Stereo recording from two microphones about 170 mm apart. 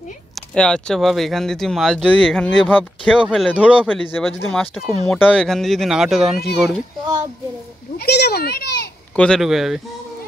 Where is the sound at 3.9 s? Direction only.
10° left (ahead or behind).